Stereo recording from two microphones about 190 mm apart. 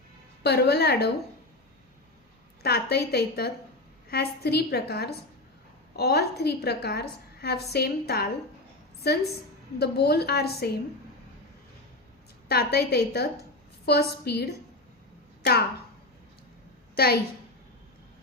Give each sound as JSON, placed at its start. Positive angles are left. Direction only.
{"t": 0.4, "sound": "a woman's voice", "side_deg": 60}
{"t": 2.6, "sound": "a woman's voice", "side_deg": 55}
{"t": 12.5, "sound": "a woman's voice", "side_deg": 55}